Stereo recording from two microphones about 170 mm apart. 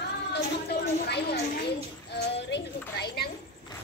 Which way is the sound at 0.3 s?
75° left (ahead or behind).